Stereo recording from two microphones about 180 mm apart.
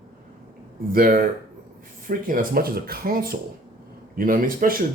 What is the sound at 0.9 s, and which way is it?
Speech, 50° right (ahead or behind).